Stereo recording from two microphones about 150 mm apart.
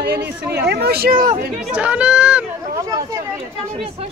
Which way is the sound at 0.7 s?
90° right.